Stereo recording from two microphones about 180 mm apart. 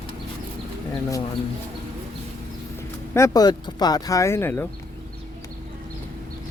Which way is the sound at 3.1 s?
20° left (ahead or behind).